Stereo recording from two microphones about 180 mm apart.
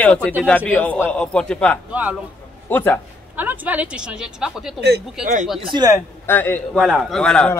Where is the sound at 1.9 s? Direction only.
10° right (ahead or behind).